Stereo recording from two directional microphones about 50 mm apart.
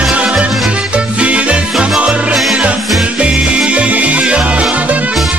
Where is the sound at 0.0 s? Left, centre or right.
Right.